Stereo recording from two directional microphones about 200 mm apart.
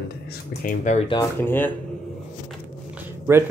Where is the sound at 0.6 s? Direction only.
40° left (ahead or behind).